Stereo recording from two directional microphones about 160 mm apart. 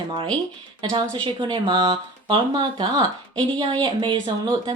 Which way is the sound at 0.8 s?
30° right (ahead or behind).